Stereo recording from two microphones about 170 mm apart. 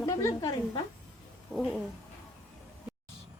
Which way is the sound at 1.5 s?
Centre (ahead or behind).